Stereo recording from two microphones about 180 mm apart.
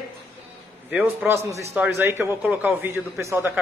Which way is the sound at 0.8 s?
10° right (ahead or behind).